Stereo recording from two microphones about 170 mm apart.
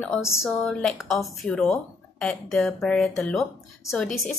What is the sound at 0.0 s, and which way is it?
Speech, centre (ahead or behind).